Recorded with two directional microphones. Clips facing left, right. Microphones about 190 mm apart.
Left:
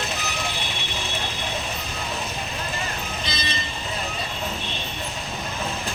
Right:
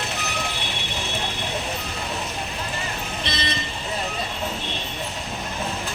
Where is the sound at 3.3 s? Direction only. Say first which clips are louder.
Right 5 dB; 65° right (ahead or behind).